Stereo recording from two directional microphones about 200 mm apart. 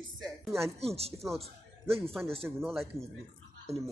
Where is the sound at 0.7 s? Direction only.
30° right (ahead or behind).